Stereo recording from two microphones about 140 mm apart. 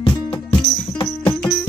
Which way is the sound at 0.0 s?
40° left (ahead or behind).